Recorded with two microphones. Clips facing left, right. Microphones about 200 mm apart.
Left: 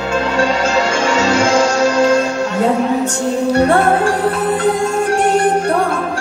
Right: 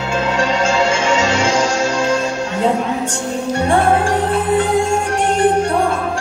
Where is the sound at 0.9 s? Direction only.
40° left (ahead or behind).